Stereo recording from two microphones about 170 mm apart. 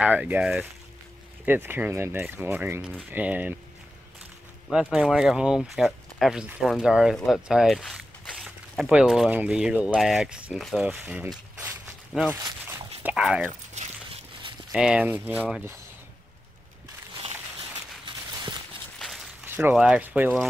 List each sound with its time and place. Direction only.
0.0 s speech: 10° right (ahead or behind)
4.6 s speech: centre (ahead or behind)
12.3 s speech: 15° right (ahead or behind)
13.0 s speech: 5° right (ahead or behind)
14.7 s speech: 5° right (ahead or behind)
17.2 s a sound: 30° right (ahead or behind)
18.9 s a sound: centre (ahead or behind)
19.4 s a sound: 10° right (ahead or behind)
19.7 s speech: 5° right (ahead or behind)